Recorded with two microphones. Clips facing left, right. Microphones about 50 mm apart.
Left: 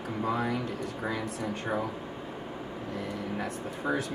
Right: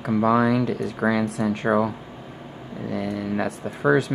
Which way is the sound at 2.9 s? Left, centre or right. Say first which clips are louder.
Right 9 dB; right.